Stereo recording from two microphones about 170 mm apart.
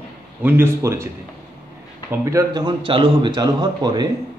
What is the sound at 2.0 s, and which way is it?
Speech, 15° right (ahead or behind).